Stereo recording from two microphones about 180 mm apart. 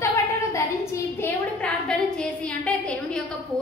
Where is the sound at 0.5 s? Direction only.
15° left (ahead or behind).